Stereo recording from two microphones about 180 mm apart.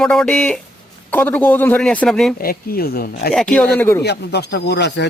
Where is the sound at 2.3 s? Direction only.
55° left (ahead or behind).